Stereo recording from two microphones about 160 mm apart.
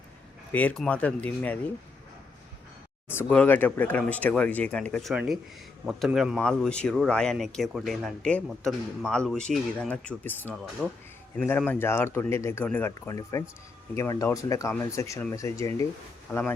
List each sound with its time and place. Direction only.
0.5 s speech: 5° left (ahead or behind)
3.1 s speech: 10° left (ahead or behind)